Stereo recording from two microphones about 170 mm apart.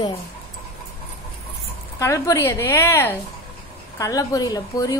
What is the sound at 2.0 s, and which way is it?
A woman's voice, 20° left (ahead or behind).